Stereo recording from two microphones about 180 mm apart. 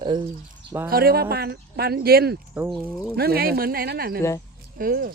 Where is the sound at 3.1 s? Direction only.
60° right (ahead or behind).